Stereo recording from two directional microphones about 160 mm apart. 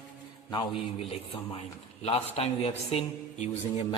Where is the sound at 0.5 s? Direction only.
35° left (ahead or behind).